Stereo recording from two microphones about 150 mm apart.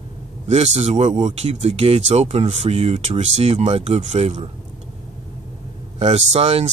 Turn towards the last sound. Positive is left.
turn(degrees=-45)  # may be behind; listen again after turning